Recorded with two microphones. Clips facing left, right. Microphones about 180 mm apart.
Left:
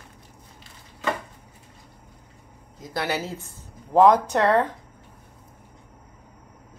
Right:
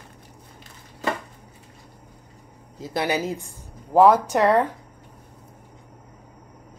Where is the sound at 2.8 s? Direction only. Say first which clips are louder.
Right 3 dB; 20° right (ahead or behind).